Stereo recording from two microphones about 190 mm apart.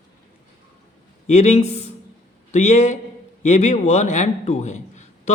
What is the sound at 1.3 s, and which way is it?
A man's voice, 35° left (ahead or behind).